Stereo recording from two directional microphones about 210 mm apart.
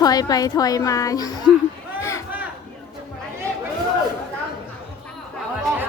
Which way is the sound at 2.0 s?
15° left (ahead or behind).